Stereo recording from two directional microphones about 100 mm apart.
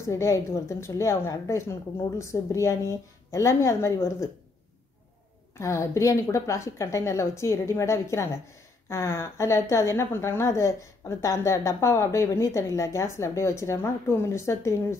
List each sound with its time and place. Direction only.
0.1 s a woman's voice: 30° left (ahead or behind)
5.6 s a woman's voice: 30° left (ahead or behind)